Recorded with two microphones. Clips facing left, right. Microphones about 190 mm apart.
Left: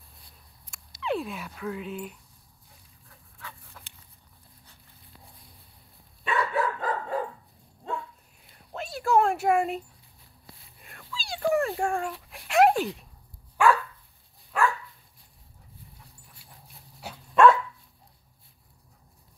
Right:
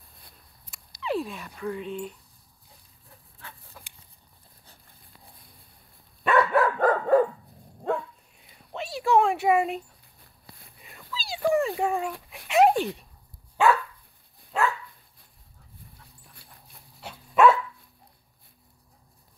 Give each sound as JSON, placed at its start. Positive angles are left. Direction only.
{"t": 1.0, "sound": "speech", "side_deg": 0}
{"t": 6.2, "sound": "dog", "side_deg": -60}
{"t": 8.4, "sound": "a sound", "side_deg": 0}
{"t": 10.8, "sound": "dog", "side_deg": 0}
{"t": 11.2, "sound": "a sound", "side_deg": 0}
{"t": 11.8, "sound": "speech", "side_deg": -5}
{"t": 12.4, "sound": "a sound", "side_deg": 0}
{"t": 13.6, "sound": "dog", "side_deg": -25}
{"t": 17.1, "sound": "dog", "side_deg": -5}